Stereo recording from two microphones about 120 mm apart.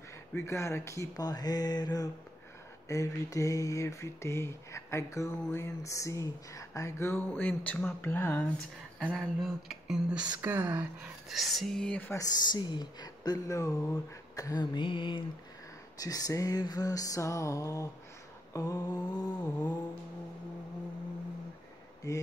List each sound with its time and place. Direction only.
0.3 s speech: 25° left (ahead or behind)
7.2 s speech: 10° left (ahead or behind)
9.1 s a sound: centre (ahead or behind)
11.2 s speech: centre (ahead or behind)
12.1 s speech: 30° left (ahead or behind)
16.0 s speech: 30° left (ahead or behind)
22.0 s speech: 30° left (ahead or behind)